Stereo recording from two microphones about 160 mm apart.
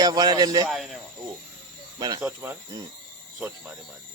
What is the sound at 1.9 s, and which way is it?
Speech, 25° right (ahead or behind).